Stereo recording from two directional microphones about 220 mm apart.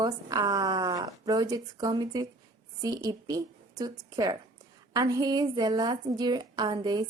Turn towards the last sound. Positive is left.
turn(degrees=-20)  # may be behind; listen again after turning